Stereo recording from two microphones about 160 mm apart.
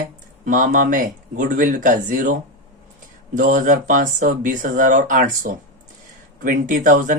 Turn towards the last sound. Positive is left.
turn(degrees=-55)  # may be behind; listen again after turning